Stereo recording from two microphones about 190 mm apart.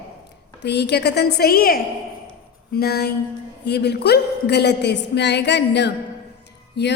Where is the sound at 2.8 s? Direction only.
55° left (ahead or behind).